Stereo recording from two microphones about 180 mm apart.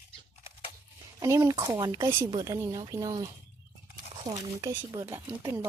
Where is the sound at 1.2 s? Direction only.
20° right (ahead or behind).